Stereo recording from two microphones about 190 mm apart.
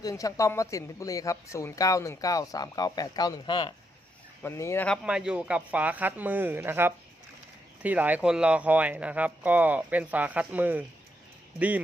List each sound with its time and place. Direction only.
0.0 s speech: 20° left (ahead or behind)
5.0 s speech: 5° right (ahead or behind)